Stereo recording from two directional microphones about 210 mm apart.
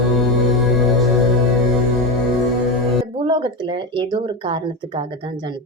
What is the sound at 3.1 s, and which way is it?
Speech, 25° right (ahead or behind).